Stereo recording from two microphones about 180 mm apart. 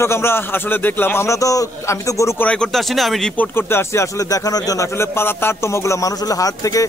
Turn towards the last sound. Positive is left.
turn(degrees=20)  # may be behind; listen again after turning